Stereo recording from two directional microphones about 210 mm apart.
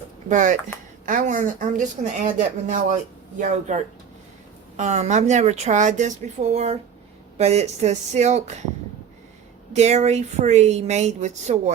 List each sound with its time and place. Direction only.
0.3 s speech: 35° right (ahead or behind)
4.8 s speech: 35° right (ahead or behind)
9.7 s speech: 30° right (ahead or behind)